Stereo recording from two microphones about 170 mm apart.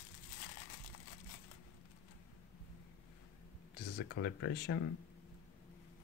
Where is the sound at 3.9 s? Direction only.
90° left.